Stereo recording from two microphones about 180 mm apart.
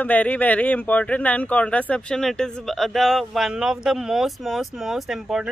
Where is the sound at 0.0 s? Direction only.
10° left (ahead or behind).